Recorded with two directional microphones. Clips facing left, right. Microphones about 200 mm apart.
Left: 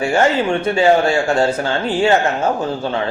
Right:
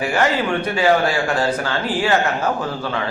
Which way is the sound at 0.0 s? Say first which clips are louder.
Left 4 dB; 30° left (ahead or behind).